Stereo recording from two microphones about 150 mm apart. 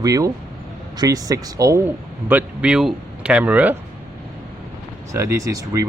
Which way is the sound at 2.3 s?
10° right (ahead or behind).